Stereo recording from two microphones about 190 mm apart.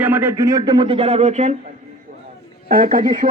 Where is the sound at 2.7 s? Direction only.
50° right (ahead or behind).